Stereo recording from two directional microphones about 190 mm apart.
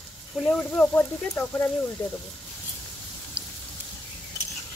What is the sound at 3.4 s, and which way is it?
Raindrop, 5° right (ahead or behind).